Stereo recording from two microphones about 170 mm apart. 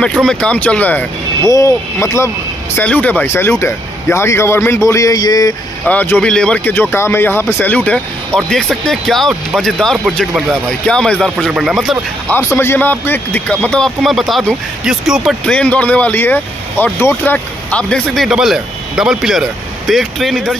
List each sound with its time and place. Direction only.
0.0 s speech: 5° left (ahead or behind); by 5.5 s 20° left (ahead or behind)
5.9 s speech: 10° left (ahead or behind)
12.4 s speech: 15° left (ahead or behind)